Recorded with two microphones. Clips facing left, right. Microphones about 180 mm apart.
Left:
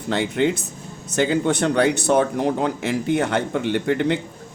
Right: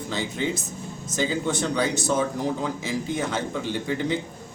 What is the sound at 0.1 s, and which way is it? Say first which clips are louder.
Speech: left 8 dB; 65° left (ahead or behind).